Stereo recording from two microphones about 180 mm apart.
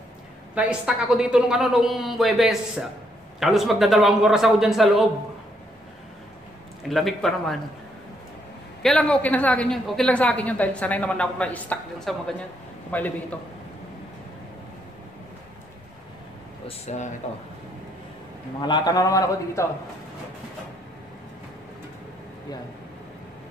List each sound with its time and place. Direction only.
0.6 s a woman's voice: 5° right (ahead or behind)
6.9 s a woman's voice: centre (ahead or behind)
8.8 s a woman's voice: 5° left (ahead or behind)
16.6 s speech: 40° left (ahead or behind)
18.6 s a man's voice: 25° left (ahead or behind)